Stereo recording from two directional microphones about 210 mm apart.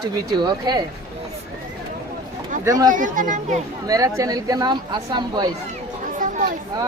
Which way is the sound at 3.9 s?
15° right (ahead or behind).